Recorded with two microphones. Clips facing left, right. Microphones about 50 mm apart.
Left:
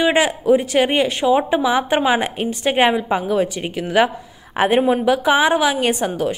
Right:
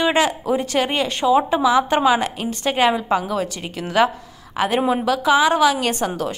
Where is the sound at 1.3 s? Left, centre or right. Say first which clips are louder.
Right 2 dB; left.